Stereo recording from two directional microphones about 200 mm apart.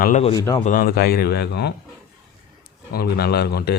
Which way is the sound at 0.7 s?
45° left (ahead or behind).